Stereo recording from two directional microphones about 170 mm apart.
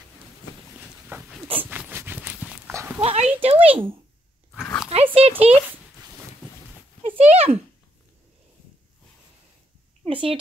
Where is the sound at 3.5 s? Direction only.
10° right (ahead or behind).